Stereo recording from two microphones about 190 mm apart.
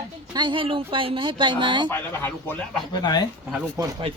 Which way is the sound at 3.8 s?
15° right (ahead or behind).